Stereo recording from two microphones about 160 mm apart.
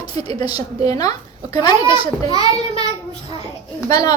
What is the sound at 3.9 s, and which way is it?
Speech, 25° left (ahead or behind).